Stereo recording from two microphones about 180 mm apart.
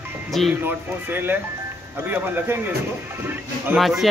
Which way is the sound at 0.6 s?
10° right (ahead or behind).